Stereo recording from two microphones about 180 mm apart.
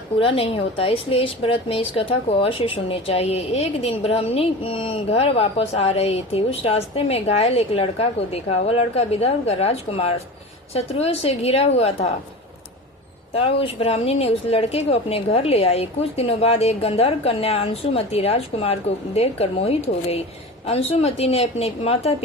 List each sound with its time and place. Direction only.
0.2 s a woman's voice: 30° left (ahead or behind)
13.3 s a woman's voice: 30° left (ahead or behind)